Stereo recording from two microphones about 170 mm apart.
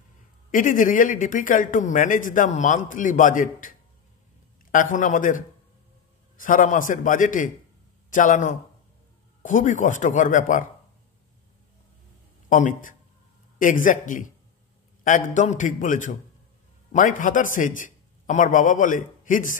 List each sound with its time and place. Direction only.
0.5 s a man's voice: 50° left (ahead or behind)
12.4 s a man's voice: 50° left (ahead or behind)